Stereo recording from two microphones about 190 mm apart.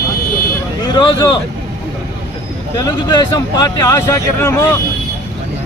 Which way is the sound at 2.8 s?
20° left (ahead or behind).